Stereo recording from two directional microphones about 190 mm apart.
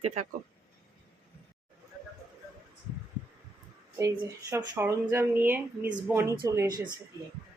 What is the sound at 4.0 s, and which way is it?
A woman's voice, 15° right (ahead or behind).